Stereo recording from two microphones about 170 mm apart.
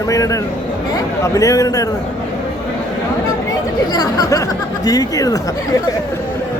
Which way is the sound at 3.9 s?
25° left (ahead or behind).